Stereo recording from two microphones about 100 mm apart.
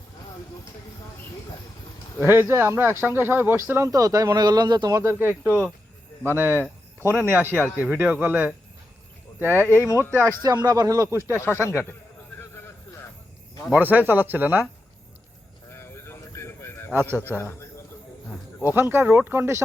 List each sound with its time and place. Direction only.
2.2 s speech: 25° right (ahead or behind)
3.8 s speech: 35° right (ahead or behind)
5.0 s speech: 20° right (ahead or behind)
9.6 s speech: 30° left (ahead or behind)
10.1 s speech: 25° right (ahead or behind)
10.4 s speech: 40° right (ahead or behind)
11.3 s speech: 25° left (ahead or behind)
12.4 s vehicle: 25° left (ahead or behind)
13.7 s speech: 20° right (ahead or behind)
15.7 s a sound: 25° left (ahead or behind)
16.9 s speech: 20° right (ahead or behind)
17.2 s a man's voice: 20° left (ahead or behind)
18.7 s speech: 20° right (ahead or behind)